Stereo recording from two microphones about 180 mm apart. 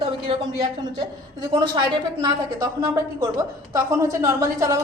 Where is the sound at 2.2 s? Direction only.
20° right (ahead or behind).